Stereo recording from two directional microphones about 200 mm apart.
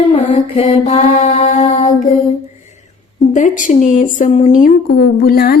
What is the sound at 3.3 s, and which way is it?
Speech, 40° left (ahead or behind).